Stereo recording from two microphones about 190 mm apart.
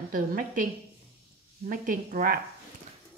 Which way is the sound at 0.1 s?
45° right (ahead or behind).